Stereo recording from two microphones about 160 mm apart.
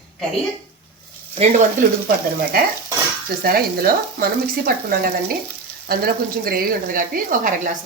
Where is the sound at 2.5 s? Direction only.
65° right (ahead or behind).